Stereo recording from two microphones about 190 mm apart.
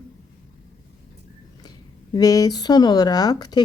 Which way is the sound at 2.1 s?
20° left (ahead or behind).